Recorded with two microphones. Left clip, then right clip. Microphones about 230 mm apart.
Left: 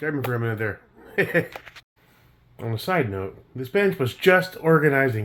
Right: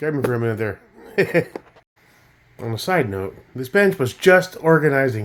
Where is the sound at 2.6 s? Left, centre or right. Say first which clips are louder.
Right 4 dB; centre.